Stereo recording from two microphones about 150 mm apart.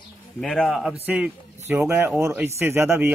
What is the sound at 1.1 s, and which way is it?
Speech, 10° right (ahead or behind).